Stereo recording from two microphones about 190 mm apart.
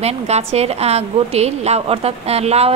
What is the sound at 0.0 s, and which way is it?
A woman's voice, 35° right (ahead or behind).